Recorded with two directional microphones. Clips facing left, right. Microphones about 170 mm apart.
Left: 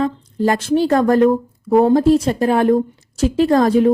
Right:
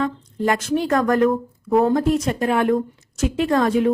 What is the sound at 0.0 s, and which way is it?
Speech, 30° left (ahead or behind).